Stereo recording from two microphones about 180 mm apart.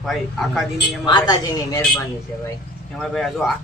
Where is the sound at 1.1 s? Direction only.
20° left (ahead or behind).